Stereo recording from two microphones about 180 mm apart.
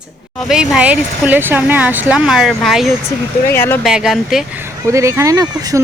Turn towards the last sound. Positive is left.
turn(degrees=-20)  # may be behind; listen again after turning